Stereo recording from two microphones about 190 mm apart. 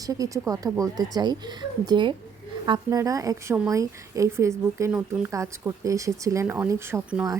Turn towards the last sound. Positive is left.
turn(degrees=-15)  # may be behind; listen again after turning